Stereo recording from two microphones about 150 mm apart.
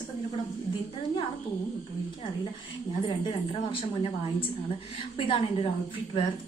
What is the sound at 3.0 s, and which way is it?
A woman's voice, 35° left (ahead or behind).